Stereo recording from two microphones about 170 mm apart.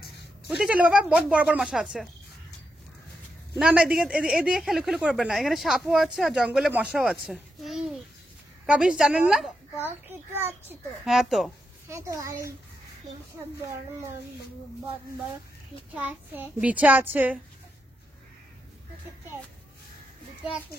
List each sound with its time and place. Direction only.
0.5 s speech: 5° right (ahead or behind)
3.5 s a child's voice: centre (ahead or behind)
11.1 s speech: centre (ahead or behind)
11.9 s a child's voice: 15° right (ahead or behind)
15.9 s a child's voice: 10° right (ahead or behind)